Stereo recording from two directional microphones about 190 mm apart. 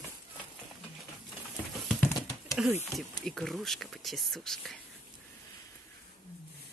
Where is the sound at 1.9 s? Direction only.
5° left (ahead or behind).